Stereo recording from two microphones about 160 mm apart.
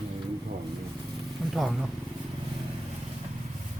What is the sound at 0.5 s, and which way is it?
Vehicle, 70° right (ahead or behind).